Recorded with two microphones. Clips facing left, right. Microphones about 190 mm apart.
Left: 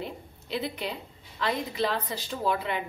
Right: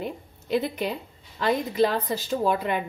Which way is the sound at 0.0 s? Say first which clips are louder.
Right 4 dB; 45° right (ahead or behind).